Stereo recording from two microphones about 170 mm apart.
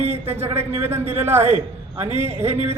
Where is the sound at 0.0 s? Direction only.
40° right (ahead or behind).